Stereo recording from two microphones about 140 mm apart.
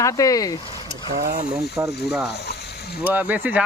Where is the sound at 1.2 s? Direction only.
70° right (ahead or behind).